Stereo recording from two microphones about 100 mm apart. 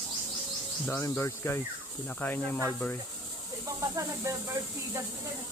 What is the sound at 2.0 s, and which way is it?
Speech, 15° left (ahead or behind).